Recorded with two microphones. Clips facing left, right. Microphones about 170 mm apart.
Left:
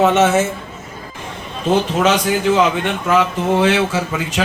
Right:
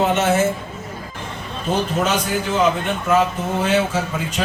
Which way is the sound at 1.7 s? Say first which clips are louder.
Left 5 dB; 90° left.